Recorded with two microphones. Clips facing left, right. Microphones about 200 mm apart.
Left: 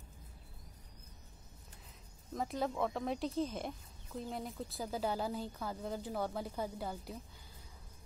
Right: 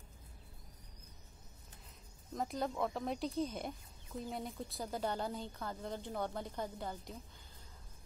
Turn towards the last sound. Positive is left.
turn(degrees=5)  # may be behind; listen again after turning